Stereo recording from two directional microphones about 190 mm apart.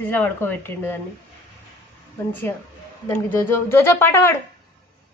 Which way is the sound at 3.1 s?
15° left (ahead or behind).